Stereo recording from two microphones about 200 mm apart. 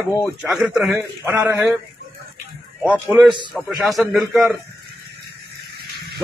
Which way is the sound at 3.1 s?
20° right (ahead or behind).